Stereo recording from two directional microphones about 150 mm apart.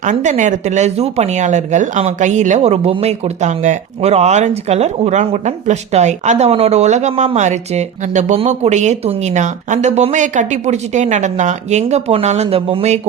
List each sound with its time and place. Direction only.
0.0 s speech: 55° right (ahead or behind)